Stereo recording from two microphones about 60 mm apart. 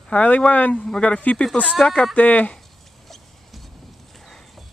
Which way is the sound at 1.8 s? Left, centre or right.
Centre.